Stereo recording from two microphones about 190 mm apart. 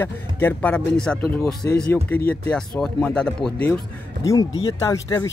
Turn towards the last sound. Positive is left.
turn(degrees=15)  # may be behind; listen again after turning